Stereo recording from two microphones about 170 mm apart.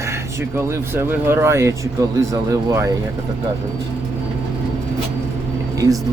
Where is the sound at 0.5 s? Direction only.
15° right (ahead or behind).